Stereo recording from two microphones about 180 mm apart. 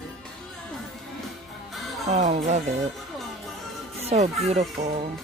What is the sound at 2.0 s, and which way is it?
Speech, 40° right (ahead or behind).